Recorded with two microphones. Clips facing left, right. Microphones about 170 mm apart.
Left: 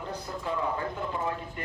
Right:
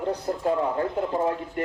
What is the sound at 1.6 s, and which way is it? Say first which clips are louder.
Speech: right 10 dB; 60° right (ahead or behind).